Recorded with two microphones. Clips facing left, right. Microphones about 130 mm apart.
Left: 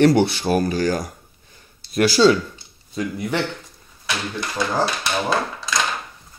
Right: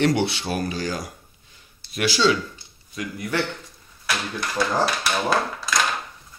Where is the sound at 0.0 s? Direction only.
40° left (ahead or behind).